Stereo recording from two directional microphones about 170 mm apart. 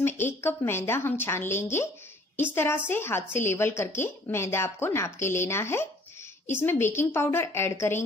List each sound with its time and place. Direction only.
0.0 s speech: 15° left (ahead or behind)